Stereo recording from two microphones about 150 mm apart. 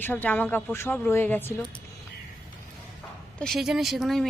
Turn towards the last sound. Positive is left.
turn(degrees=0)  # may be behind; listen again after turning